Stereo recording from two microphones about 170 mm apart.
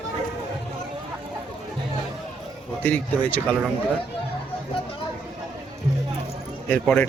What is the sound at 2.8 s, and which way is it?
Speech, 10° left (ahead or behind).